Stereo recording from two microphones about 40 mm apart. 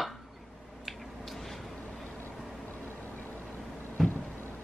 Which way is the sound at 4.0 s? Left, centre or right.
Centre.